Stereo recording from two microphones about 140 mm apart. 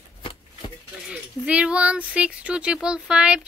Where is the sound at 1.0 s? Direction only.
10° right (ahead or behind).